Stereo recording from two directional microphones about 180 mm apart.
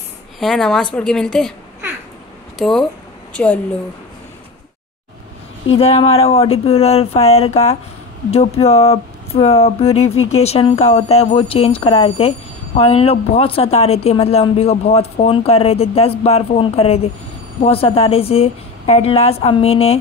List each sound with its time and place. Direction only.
0.4 s a woman's voice: centre (ahead or behind)
2.6 s a woman's voice: 5° left (ahead or behind)
5.8 s speech: 35° left (ahead or behind)